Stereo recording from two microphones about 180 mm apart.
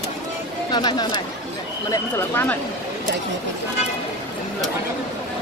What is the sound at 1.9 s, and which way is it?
Speech, 15° left (ahead or behind).